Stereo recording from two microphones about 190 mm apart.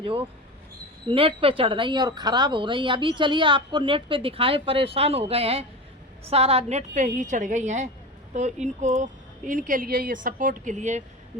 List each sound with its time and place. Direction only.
1.0 s a woman's voice: 30° right (ahead or behind)